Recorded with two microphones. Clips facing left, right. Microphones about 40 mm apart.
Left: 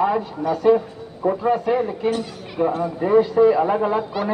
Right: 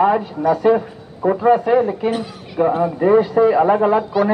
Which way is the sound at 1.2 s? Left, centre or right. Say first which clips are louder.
Right 5 dB; centre.